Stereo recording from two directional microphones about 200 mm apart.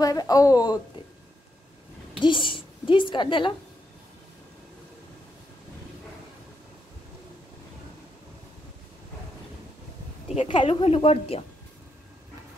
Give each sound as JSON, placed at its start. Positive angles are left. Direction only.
{"t": 0.0, "sound": "a woman's voice", "side_deg": 20}
{"t": 2.5, "sound": "a woman's voice", "side_deg": 25}
{"t": 10.3, "sound": "a woman's voice", "side_deg": 25}